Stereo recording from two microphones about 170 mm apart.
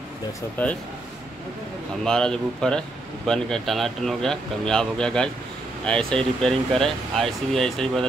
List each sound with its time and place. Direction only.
0.6 s speech: 10° left (ahead or behind)
2.0 s speech: 5° left (ahead or behind)